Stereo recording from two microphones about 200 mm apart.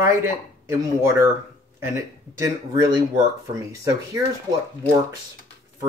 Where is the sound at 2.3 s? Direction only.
15° right (ahead or behind).